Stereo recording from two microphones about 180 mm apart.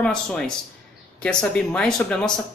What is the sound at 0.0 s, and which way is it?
A man's voice, 5° left (ahead or behind).